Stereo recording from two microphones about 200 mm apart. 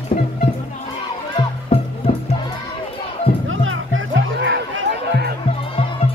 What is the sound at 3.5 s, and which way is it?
Music, 80° right.